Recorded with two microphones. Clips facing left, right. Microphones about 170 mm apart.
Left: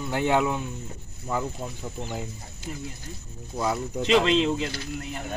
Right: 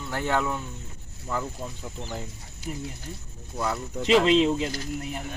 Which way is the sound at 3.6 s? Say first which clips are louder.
Left 2 dB; 15° left (ahead or behind).